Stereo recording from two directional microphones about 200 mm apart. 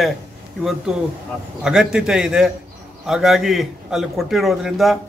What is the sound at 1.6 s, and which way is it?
Speech, 5° right (ahead or behind).